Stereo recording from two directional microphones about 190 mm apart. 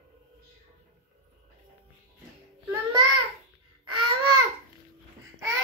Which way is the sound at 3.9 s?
25° right (ahead or behind).